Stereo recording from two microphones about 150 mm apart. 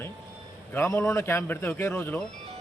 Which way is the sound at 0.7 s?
15° left (ahead or behind).